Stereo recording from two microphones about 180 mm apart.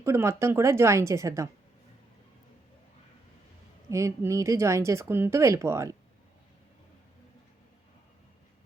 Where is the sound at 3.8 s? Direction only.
15° right (ahead or behind).